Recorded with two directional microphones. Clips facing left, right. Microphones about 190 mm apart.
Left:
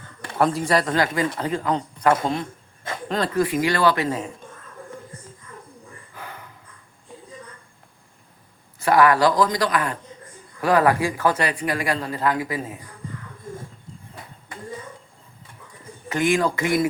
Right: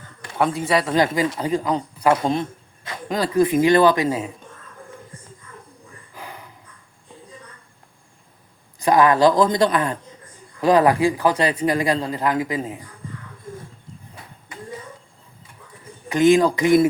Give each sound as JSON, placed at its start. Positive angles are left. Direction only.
{"t": 0.3, "sound": "a man's voice", "side_deg": 0}
{"t": 0.9, "sound": "speech", "side_deg": -15}
{"t": 6.1, "sound": "dog", "side_deg": -15}
{"t": 8.8, "sound": "speech", "side_deg": -20}
{"t": 16.0, "sound": "speech", "side_deg": -20}